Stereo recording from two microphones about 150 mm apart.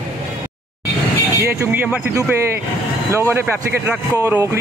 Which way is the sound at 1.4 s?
15° right (ahead or behind).